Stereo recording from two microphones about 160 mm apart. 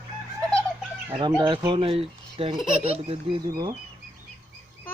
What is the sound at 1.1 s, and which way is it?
Speech, 25° right (ahead or behind).